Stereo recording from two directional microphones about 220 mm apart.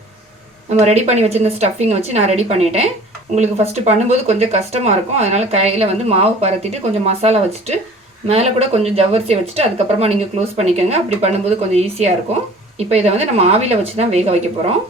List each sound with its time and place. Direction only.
0.8 s speech: 30° right (ahead or behind)